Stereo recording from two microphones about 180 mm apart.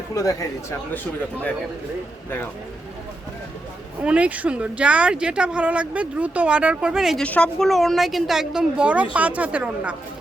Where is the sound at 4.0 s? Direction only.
5° right (ahead or behind).